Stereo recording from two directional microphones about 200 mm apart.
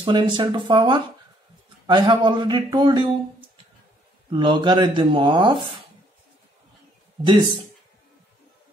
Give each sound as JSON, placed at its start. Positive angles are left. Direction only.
{"t": 0.0, "sound": "speech", "side_deg": -25}